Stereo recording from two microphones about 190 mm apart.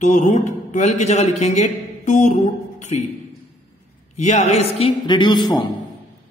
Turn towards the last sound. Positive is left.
turn(degrees=25)  # may be behind; listen again after turning